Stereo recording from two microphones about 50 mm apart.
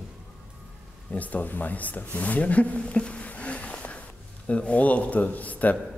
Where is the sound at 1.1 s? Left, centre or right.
Left.